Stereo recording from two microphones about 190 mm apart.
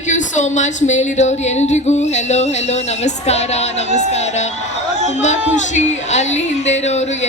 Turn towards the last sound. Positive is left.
turn(degrees=35)  # may be behind; listen again after turning